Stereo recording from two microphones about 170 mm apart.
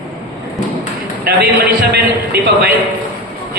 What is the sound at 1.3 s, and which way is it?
A man's voice, 70° right (ahead or behind).